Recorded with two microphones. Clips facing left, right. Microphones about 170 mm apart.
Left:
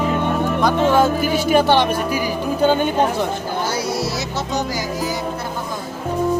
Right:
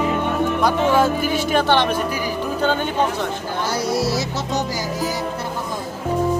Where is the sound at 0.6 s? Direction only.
5° right (ahead or behind).